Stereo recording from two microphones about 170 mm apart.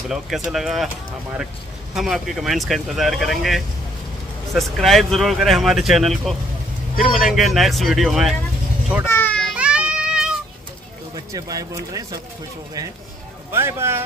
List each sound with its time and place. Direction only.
0.1 s speech: centre (ahead or behind)
2.0 s speech: centre (ahead or behind)
9.0 s children playing: 10° left (ahead or behind)
9.6 s children playing: 5° right (ahead or behind)
11.1 s speech: 20° right (ahead or behind)
13.5 s a man's voice: 15° right (ahead or behind)